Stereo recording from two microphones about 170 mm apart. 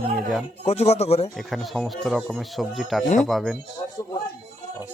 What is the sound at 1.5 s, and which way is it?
Speech, centre (ahead or behind).